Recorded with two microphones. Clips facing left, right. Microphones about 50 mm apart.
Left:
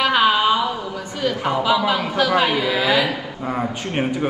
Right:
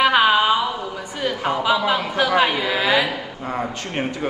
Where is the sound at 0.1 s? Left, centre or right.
Centre.